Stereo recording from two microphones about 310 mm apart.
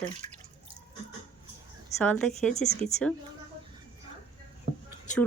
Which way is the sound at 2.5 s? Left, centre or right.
Left.